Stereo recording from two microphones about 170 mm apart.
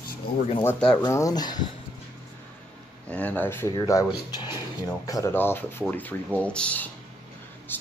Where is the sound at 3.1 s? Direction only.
10° left (ahead or behind).